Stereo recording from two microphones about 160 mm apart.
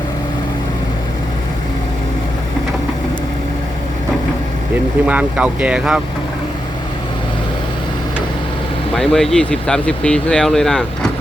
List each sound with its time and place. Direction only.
5.0 s speech: 10° right (ahead or behind)
9.0 s speech: 5° left (ahead or behind)